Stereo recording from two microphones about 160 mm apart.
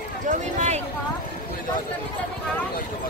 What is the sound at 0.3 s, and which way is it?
Speech, 50° right (ahead or behind).